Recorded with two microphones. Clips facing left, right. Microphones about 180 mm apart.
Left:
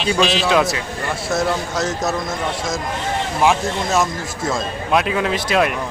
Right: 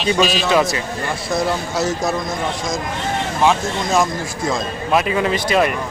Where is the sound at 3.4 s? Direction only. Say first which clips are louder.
Even; 10° left (ahead or behind).